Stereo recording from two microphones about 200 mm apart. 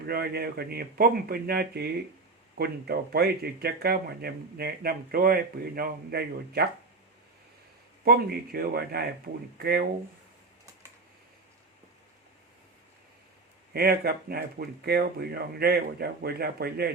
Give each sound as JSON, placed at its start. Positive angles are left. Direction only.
{"t": 0.1, "sound": "speech", "side_deg": -50}
{"t": 8.0, "sound": "speech", "side_deg": -50}
{"t": 13.7, "sound": "speech", "side_deg": -50}